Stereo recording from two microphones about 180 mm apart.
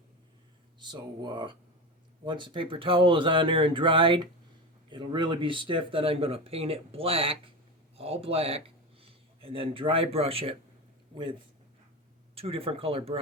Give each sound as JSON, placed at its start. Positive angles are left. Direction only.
{"t": 0.8, "sound": "speech", "side_deg": -25}
{"t": 12.3, "sound": "speech", "side_deg": -30}